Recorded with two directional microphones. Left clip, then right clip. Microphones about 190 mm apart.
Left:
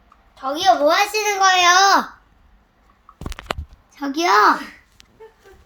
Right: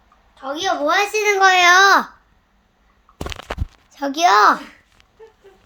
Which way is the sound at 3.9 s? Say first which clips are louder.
Right 3 dB; 65° right (ahead or behind).